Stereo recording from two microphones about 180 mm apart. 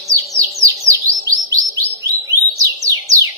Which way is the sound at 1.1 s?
20° right (ahead or behind).